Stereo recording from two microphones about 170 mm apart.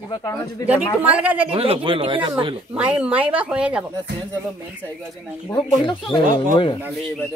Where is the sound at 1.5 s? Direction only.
35° right (ahead or behind).